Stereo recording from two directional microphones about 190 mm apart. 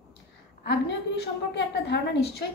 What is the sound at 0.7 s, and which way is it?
A woman's voice, 65° left (ahead or behind).